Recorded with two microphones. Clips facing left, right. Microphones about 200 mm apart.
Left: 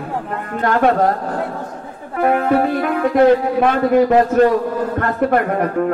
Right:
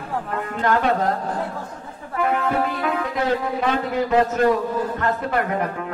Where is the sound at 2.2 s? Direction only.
55° left (ahead or behind).